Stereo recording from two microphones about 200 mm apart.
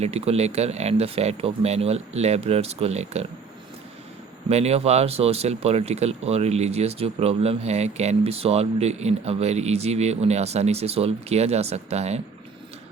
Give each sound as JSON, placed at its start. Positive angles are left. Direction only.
{"t": 0.0, "sound": "speech", "side_deg": -30}
{"t": 4.4, "sound": "speech", "side_deg": -30}